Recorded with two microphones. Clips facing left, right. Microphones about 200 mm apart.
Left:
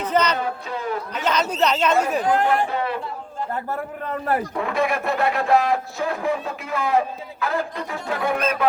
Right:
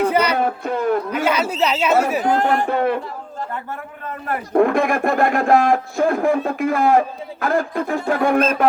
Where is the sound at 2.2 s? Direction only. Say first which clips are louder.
Right 2 dB; 45° right (ahead or behind).